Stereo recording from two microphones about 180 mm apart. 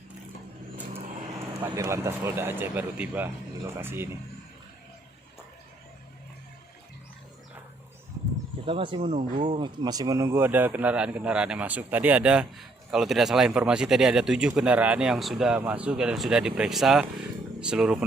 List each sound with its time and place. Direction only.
1.6 s speech: 15° right (ahead or behind)
8.6 s speech: 30° right (ahead or behind)
9.6 s a man's voice: 25° right (ahead or behind); by 17.9 s 5° right (ahead or behind)